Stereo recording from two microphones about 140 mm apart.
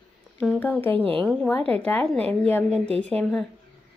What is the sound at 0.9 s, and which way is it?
Speech, 40° right (ahead or behind).